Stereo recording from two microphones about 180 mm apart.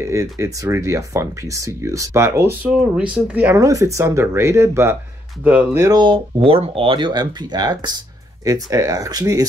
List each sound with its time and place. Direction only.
0.0 s speech: 15° right (ahead or behind)